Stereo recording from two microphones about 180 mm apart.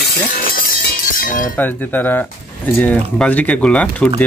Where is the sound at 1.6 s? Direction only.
10° left (ahead or behind).